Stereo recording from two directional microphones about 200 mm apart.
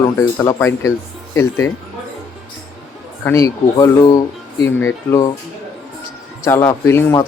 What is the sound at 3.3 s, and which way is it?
Speech, 15° left (ahead or behind).